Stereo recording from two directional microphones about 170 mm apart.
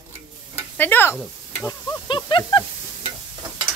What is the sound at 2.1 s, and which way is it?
Snake, 25° left (ahead or behind).